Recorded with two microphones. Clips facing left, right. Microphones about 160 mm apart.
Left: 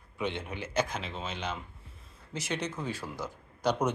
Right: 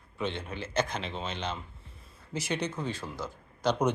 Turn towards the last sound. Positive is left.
turn(degrees=15)  # may be behind; listen again after turning